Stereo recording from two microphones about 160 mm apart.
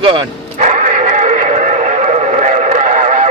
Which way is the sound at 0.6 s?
50° right (ahead or behind).